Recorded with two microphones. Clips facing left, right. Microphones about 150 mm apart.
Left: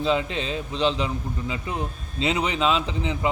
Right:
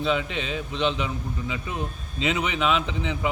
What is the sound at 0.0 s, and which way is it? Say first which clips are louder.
A man's voice: left 2 dB; 30° left (ahead or behind).